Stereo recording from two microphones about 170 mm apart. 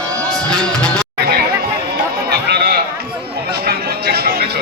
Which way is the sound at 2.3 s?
70° right (ahead or behind).